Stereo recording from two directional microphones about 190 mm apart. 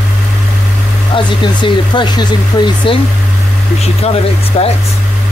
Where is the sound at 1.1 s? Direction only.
25° left (ahead or behind).